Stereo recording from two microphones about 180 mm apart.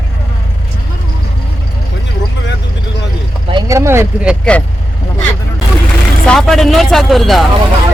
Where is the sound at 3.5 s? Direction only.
20° right (ahead or behind).